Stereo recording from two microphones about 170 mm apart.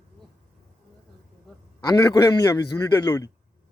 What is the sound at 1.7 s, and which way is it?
Speech, 20° left (ahead or behind).